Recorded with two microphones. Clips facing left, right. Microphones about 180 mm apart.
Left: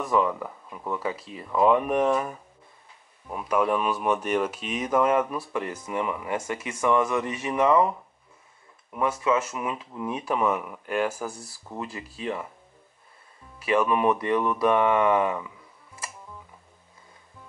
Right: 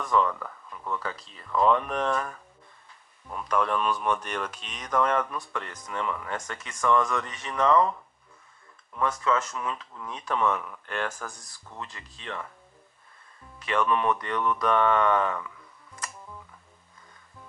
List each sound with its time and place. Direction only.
0.0 s speech: 10° left (ahead or behind)
13.6 s speech: 10° left (ahead or behind)